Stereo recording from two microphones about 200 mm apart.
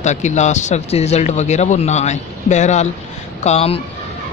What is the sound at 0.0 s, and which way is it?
Speech, 35° left (ahead or behind).